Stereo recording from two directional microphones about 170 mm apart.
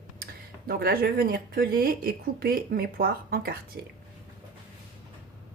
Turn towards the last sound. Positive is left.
turn(degrees=-60)  # may be behind; listen again after turning